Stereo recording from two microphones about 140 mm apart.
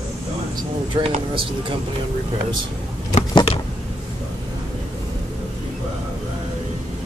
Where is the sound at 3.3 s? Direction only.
40° left (ahead or behind).